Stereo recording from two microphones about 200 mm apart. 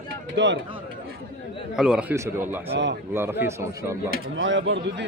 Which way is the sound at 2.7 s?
60° right (ahead or behind).